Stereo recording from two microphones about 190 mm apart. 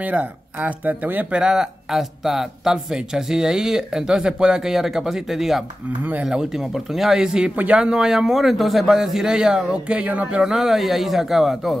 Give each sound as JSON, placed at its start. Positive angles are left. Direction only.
{"t": 0.0, "sound": "speech", "side_deg": -10}